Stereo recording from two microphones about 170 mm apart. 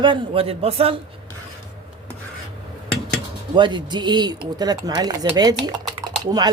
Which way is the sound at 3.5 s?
25° right (ahead or behind).